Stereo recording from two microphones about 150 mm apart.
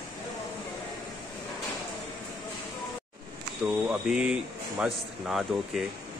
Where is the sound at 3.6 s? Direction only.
5° right (ahead or behind).